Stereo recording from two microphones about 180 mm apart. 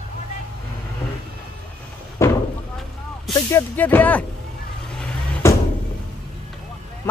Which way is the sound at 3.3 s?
10° left (ahead or behind).